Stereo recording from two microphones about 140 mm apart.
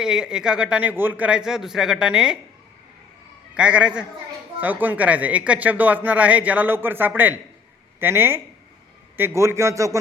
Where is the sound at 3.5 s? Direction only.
10° right (ahead or behind).